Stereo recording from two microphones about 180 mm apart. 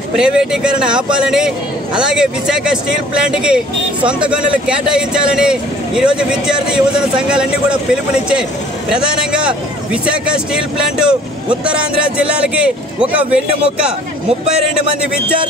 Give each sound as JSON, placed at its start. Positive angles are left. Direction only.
{"t": 0.1, "sound": "a man's voice", "side_deg": -5}